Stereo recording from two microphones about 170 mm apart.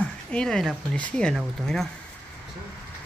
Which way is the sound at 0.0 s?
5° left (ahead or behind).